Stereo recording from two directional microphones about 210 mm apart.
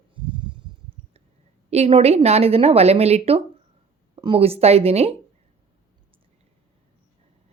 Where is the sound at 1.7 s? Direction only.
30° right (ahead or behind).